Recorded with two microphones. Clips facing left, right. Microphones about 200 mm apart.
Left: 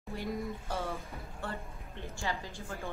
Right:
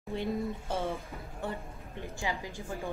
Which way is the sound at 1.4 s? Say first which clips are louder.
Right 4 dB; 15° right (ahead or behind).